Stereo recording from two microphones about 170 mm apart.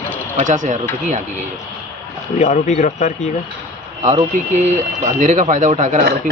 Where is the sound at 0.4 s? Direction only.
45° right (ahead or behind).